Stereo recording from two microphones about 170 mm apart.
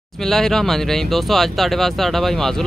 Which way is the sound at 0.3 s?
5° left (ahead or behind).